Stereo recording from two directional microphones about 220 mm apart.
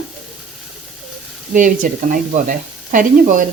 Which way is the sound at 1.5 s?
35° right (ahead or behind).